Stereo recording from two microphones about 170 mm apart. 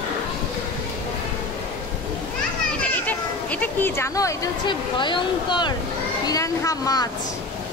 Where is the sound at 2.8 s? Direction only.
10° left (ahead or behind).